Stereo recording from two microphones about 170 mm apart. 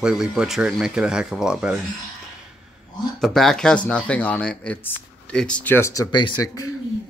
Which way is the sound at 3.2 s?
Centre (ahead or behind).